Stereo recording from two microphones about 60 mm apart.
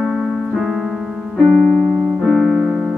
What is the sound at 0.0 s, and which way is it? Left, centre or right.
Keyboard, centre.